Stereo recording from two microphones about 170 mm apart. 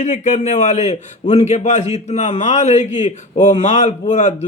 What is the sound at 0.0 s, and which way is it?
A man's voice, 45° left (ahead or behind).